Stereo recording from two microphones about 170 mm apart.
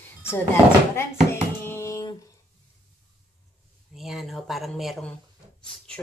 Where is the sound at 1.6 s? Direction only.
15° left (ahead or behind).